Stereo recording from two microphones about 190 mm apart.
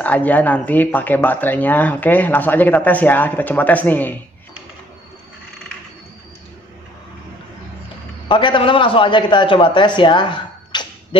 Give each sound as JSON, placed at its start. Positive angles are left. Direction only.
{"t": 0.0, "sound": "speech", "side_deg": 10}
{"t": 8.3, "sound": "a man's voice", "side_deg": 25}